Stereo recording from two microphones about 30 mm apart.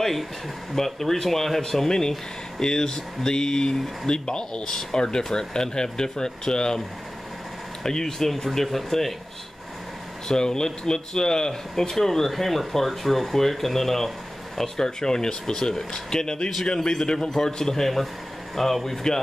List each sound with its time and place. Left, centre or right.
0.7 s speech: centre
7.8 s speech: centre
10.2 s speech: left
18.5 s speech: centre